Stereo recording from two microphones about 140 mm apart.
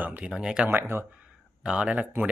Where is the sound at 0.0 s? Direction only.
10° right (ahead or behind).